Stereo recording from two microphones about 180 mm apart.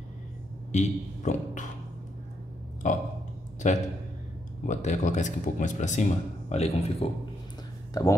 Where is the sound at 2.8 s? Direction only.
40° left (ahead or behind).